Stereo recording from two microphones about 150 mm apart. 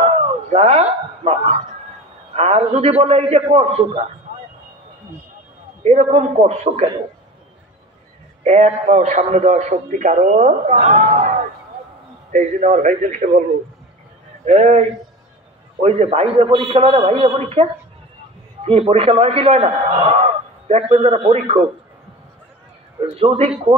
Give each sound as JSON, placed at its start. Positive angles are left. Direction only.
{"t": 0.0, "sound": "a sound", "side_deg": -45}
{"t": 2.3, "sound": "a man's voice", "side_deg": -45}
{"t": 5.9, "sound": "a man's voice", "side_deg": -45}
{"t": 8.5, "sound": "a man's voice", "side_deg": -50}
{"t": 14.4, "sound": "a man's voice", "side_deg": -50}
{"t": 23.1, "sound": "a man's voice", "side_deg": -40}